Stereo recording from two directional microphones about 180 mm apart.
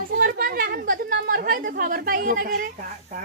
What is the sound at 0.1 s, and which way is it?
A woman's voice, 55° right (ahead or behind).